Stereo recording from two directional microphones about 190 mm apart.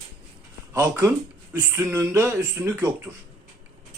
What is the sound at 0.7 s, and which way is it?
Speech, 15° right (ahead or behind).